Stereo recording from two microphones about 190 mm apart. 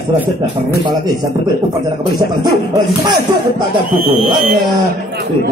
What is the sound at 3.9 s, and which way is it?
Speech, 30° left (ahead or behind).